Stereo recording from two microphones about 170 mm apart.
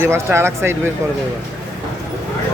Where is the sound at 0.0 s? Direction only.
15° right (ahead or behind).